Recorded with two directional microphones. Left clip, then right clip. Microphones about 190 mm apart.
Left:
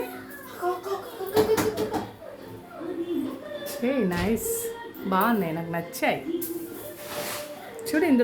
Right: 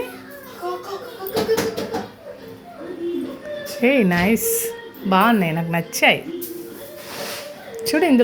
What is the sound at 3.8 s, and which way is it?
Speech, 35° right (ahead or behind).